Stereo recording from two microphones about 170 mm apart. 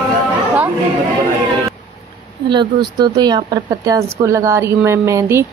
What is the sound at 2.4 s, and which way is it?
A woman's voice, 25° right (ahead or behind).